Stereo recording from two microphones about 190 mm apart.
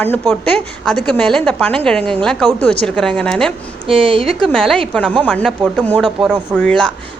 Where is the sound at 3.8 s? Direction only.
30° right (ahead or behind).